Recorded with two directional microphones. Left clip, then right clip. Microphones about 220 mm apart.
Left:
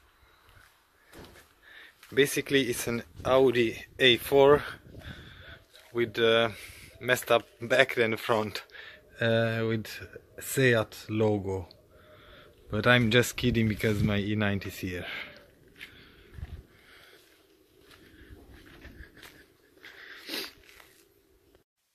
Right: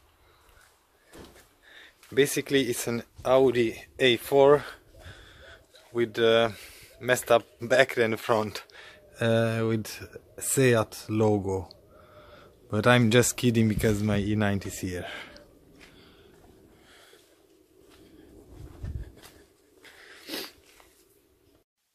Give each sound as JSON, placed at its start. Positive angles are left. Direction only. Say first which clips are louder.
{"t": 1.7, "sound": "speech", "louder": "even", "side_deg": -5}
{"t": 19.8, "sound": "wheeze", "louder": "left 3 dB", "side_deg": 0}